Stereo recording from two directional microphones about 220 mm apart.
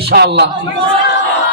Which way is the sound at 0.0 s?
50° right (ahead or behind).